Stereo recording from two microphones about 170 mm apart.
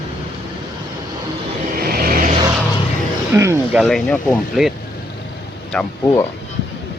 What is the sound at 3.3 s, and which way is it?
Speech, 15° right (ahead or behind).